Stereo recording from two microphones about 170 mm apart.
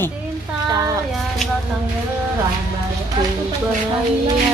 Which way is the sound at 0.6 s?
20° right (ahead or behind).